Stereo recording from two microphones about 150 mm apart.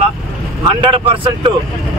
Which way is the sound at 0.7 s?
35° right (ahead or behind).